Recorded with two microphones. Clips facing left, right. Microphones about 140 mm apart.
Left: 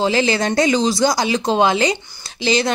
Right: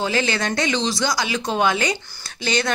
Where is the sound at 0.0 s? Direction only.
35° left (ahead or behind).